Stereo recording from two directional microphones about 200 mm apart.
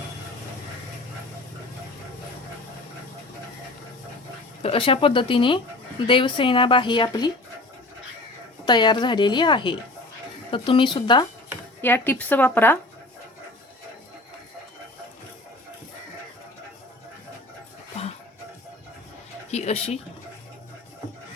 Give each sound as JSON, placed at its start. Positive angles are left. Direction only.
{"t": 4.6, "sound": "a woman's voice", "side_deg": 30}
{"t": 8.6, "sound": "a woman's voice", "side_deg": 20}
{"t": 11.8, "sound": "speech", "side_deg": 10}
{"t": 19.5, "sound": "speech", "side_deg": 35}